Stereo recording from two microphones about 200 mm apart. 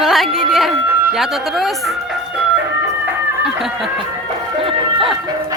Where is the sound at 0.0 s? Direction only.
Centre (ahead or behind).